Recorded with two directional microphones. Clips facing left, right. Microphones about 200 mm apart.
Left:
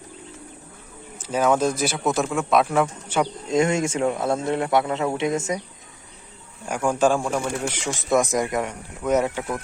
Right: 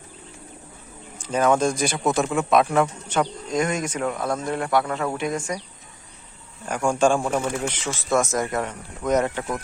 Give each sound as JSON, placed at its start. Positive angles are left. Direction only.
{"t": 1.3, "sound": "speech", "side_deg": 5}
{"t": 3.5, "sound": "speech", "side_deg": 25}
{"t": 6.7, "sound": "speech", "side_deg": 5}
{"t": 7.7, "sound": "speech", "side_deg": 15}